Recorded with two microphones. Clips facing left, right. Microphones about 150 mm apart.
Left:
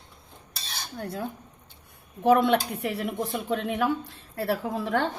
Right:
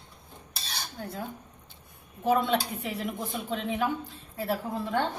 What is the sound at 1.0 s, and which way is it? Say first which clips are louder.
A woman's voice: left 5 dB; 70° left (ahead or behind).